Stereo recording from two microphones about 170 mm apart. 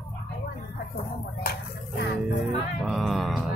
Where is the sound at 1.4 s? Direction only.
75° left (ahead or behind).